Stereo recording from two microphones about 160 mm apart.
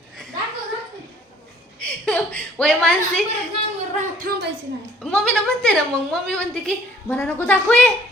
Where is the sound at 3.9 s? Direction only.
60° right (ahead or behind).